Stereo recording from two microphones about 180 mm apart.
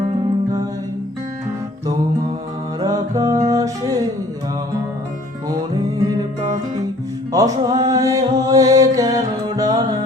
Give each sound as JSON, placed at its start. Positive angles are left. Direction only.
{"t": 2.8, "sound": "music", "side_deg": -20}
{"t": 7.3, "sound": "music", "side_deg": -20}